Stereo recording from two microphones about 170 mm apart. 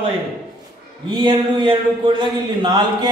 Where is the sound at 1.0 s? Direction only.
30° right (ahead or behind).